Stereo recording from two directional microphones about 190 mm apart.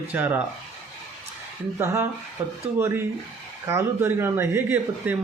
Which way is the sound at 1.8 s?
15° right (ahead or behind).